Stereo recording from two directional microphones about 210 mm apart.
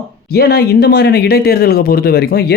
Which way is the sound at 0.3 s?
50° left (ahead or behind).